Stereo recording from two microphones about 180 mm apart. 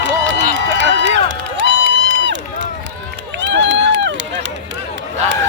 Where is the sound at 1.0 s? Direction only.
85° right.